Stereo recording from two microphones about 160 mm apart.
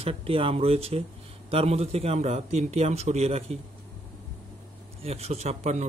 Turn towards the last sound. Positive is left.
turn(degrees=-45)  # may be behind; listen again after turning